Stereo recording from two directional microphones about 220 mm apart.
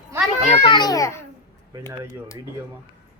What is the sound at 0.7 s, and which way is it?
Speech, 20° left (ahead or behind).